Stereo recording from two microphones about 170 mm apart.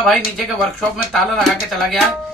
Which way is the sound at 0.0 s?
Centre (ahead or behind).